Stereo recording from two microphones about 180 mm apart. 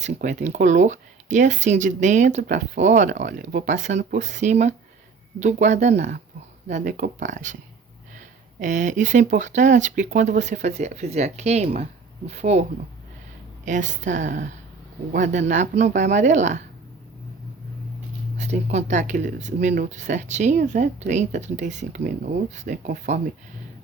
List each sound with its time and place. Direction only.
0.0 s speech: 45° right (ahead or behind)
6.0 s speech: 50° right (ahead or behind)
13.7 s speech: 45° right (ahead or behind)
18.3 s speech: 40° right (ahead or behind)